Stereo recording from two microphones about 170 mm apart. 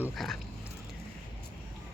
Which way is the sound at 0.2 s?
Centre (ahead or behind).